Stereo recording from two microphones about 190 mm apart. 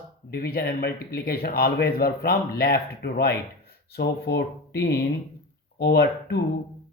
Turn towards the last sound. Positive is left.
turn(degrees=55)  # may be behind; listen again after turning